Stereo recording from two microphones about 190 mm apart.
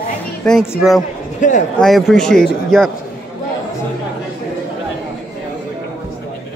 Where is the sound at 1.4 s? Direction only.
40° left (ahead or behind).